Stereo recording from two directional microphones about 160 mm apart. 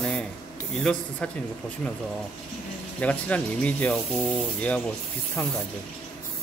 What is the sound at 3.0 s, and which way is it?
Speech, 10° left (ahead or behind).